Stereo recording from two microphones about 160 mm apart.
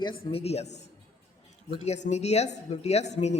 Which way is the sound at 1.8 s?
45° left (ahead or behind).